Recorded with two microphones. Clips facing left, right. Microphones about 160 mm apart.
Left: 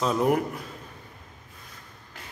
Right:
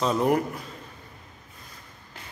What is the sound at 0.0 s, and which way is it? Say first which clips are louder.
Speech: even; centre (ahead or behind).